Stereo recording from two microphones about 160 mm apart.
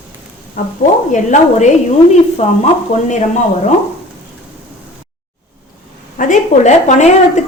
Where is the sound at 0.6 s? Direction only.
60° left (ahead or behind); by 3.1 s 45° left (ahead or behind).